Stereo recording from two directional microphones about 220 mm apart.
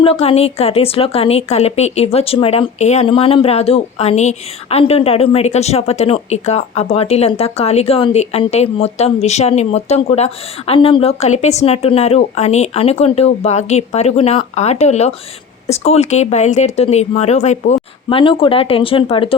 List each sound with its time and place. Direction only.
0.0 s a woman's voice: 25° left (ahead or behind)